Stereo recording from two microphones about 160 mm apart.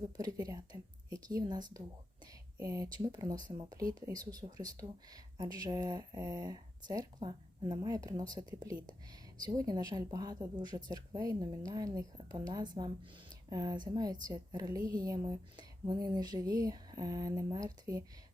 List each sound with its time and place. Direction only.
0.2 s speech: 25° right (ahead or behind)